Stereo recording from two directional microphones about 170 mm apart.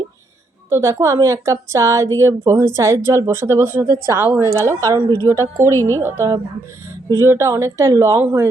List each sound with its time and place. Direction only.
0.7 s a woman's voice: 15° right (ahead or behind)
5.7 s a woman's voice: 15° left (ahead or behind)
6.0 s a woman's voice: 15° right (ahead or behind)